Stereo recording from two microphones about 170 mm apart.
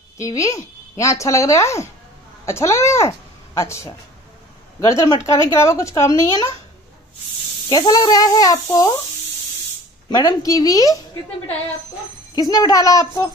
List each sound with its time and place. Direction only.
0.2 s a woman's voice: 20° left (ahead or behind)
7.7 s a child's voice: 25° left (ahead or behind)
10.0 s a child's voice: 20° left (ahead or behind)
12.4 s a child's voice: 20° left (ahead or behind)